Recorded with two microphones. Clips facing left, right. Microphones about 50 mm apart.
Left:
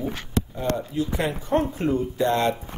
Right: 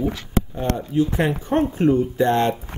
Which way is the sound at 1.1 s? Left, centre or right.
Right.